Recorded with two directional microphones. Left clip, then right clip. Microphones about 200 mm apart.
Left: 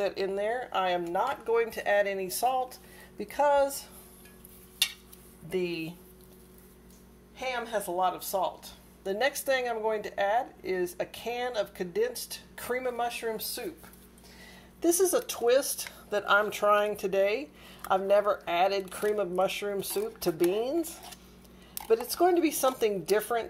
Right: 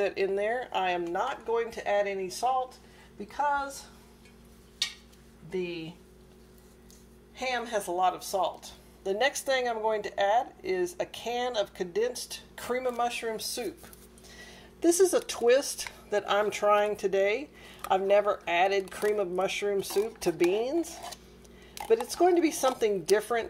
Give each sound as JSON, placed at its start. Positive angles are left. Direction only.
{"t": 0.0, "sound": "speech", "side_deg": -10}
{"t": 5.5, "sound": "speech", "side_deg": 40}
{"t": 7.3, "sound": "speech", "side_deg": -10}